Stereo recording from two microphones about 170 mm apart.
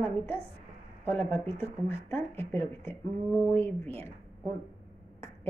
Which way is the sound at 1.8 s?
15° left (ahead or behind).